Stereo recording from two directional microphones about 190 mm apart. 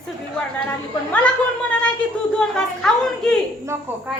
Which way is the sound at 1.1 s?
5° left (ahead or behind).